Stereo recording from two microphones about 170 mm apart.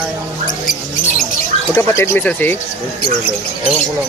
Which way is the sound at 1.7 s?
15° left (ahead or behind).